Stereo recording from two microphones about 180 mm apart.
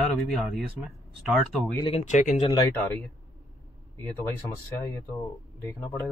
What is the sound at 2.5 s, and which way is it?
Speech, 25° left (ahead or behind).